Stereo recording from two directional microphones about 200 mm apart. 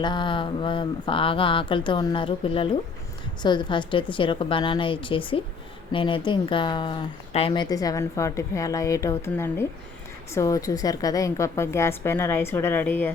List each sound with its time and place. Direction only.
0.0 s a woman's voice: 25° left (ahead or behind)